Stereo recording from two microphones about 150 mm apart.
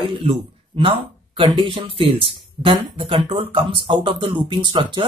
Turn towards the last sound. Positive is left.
turn(degrees=-30)  # may be behind; listen again after turning